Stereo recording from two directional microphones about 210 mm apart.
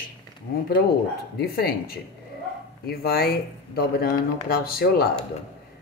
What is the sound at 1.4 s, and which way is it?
Speech, 45° left (ahead or behind).